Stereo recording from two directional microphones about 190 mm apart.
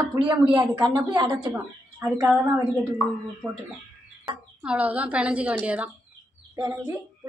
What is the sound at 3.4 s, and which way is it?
A woman's voice, 15° right (ahead or behind).